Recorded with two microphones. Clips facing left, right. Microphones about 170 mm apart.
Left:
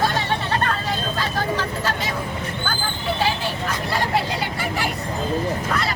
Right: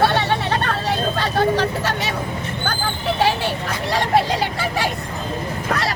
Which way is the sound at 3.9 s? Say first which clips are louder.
Right 6 dB; 80° right.